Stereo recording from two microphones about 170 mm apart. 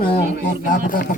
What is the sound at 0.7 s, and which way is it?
Speech, 50° left (ahead or behind).